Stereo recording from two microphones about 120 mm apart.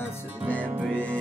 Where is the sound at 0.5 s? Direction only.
15° right (ahead or behind).